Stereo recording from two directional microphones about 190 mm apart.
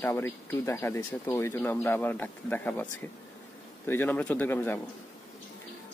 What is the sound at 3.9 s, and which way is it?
Speech, 10° left (ahead or behind).